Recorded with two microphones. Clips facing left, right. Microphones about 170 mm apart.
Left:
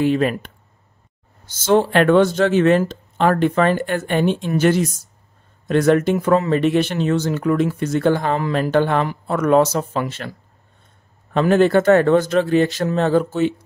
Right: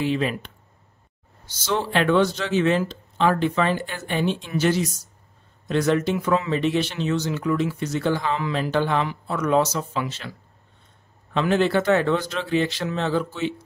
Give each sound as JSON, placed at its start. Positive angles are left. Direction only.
{"t": 0.0, "sound": "speech", "side_deg": 50}
{"t": 1.5, "sound": "speech", "side_deg": 50}
{"t": 11.3, "sound": "speech", "side_deg": 50}